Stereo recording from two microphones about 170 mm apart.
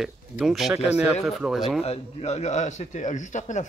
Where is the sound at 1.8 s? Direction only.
35° left (ahead or behind).